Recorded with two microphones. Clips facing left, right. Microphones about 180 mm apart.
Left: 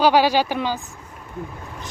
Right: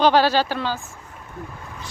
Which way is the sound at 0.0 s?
10° left (ahead or behind).